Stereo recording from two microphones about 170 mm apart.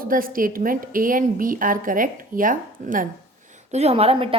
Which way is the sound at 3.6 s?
40° right (ahead or behind).